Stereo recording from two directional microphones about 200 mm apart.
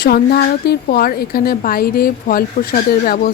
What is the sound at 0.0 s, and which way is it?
A woman's voice, 50° left (ahead or behind).